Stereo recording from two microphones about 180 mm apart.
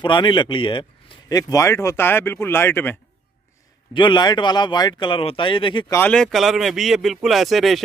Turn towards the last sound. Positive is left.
turn(degrees=0)  # may be behind; listen again after turning